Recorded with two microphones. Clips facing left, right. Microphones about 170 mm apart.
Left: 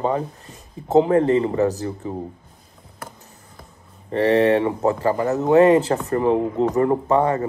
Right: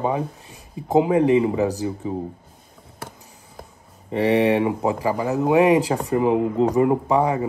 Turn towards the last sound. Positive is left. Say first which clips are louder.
# left 1 dB
turn(degrees=-10)  # may be behind; listen again after turning